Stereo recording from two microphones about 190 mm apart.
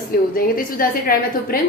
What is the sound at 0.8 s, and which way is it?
Speech, 50° left (ahead or behind).